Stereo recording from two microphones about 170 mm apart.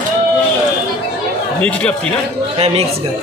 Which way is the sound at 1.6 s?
5° left (ahead or behind).